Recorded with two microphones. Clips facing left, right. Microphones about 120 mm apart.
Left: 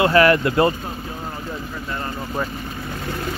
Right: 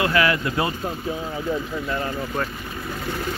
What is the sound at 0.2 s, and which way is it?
Speech, 50° left (ahead or behind).